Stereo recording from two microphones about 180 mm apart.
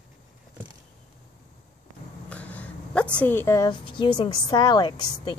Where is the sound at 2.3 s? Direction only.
10° left (ahead or behind).